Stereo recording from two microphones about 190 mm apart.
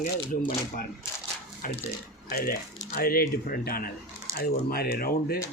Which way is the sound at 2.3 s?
50° left (ahead or behind).